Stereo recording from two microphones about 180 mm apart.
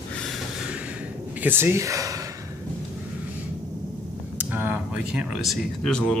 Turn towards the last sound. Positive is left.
turn(degrees=0)  # may be behind; listen again after turning